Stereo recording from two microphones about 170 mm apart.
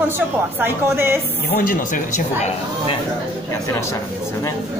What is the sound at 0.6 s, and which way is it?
Speech, 15° right (ahead or behind).